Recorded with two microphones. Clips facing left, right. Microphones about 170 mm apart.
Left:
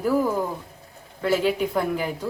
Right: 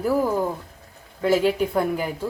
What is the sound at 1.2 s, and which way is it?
Speech, 5° right (ahead or behind).